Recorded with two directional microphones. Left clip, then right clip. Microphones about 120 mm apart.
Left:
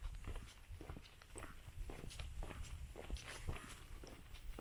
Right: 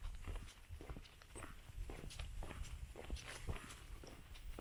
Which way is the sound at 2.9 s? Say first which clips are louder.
Even; 35° right (ahead or behind).